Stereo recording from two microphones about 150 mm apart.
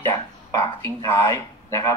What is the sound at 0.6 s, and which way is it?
Speech, 30° left (ahead or behind).